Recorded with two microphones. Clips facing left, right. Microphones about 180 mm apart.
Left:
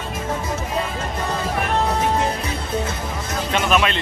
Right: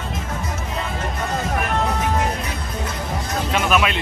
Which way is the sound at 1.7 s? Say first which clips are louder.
Left 3 dB; 30° left (ahead or behind).